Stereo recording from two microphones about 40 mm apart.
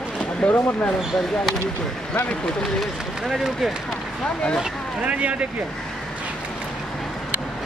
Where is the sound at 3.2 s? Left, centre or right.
Centre.